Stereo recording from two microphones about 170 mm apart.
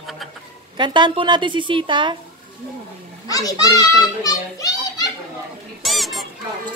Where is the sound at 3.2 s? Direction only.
20° left (ahead or behind).